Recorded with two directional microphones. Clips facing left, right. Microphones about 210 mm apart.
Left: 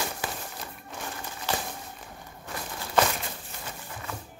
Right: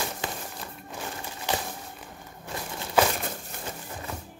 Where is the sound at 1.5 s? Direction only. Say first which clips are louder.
Right 1 dB; 15° right (ahead or behind).